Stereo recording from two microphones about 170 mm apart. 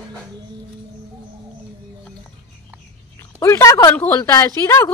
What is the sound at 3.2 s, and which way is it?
Speech, 15° left (ahead or behind).